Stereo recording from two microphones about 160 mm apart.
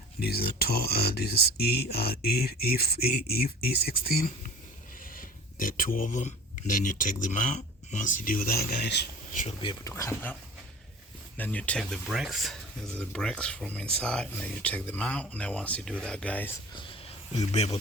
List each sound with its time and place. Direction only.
0.2 s speech: 75° left (ahead or behind); by 9.0 s 90° left
9.3 s speech: 50° left (ahead or behind)
9.8 s speech: 15° left (ahead or behind)
11.3 s speech: 10° left (ahead or behind)
16.7 s a sound: 30° left (ahead or behind)